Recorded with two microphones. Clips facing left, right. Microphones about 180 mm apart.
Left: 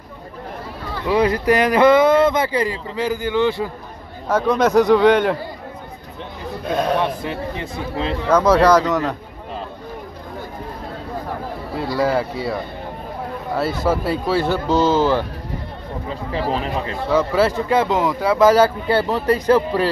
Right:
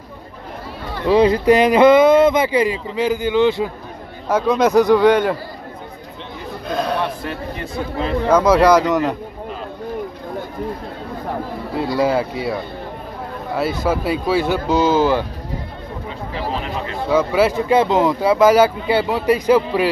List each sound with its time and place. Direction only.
1.0 s a man's voice: 25° right (ahead or behind); by 5.4 s 5° right (ahead or behind)
6.7 s a man's voice: 10° left (ahead or behind)
8.3 s speech: 10° right (ahead or behind)
11.9 s speech: 20° right (ahead or behind)
13.6 s speech: 15° right (ahead or behind)
17.1 s speech: 10° right (ahead or behind)